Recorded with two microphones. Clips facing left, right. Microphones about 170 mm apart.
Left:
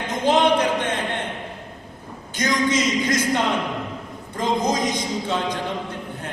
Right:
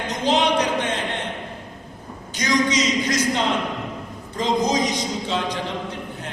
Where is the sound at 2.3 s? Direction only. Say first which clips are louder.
Even; 55° left (ahead or behind).